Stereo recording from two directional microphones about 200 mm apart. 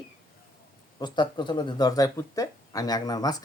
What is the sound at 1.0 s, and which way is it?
Speech, 20° left (ahead or behind).